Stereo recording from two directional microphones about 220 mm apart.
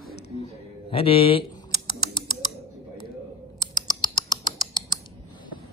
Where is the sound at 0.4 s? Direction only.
25° left (ahead or behind).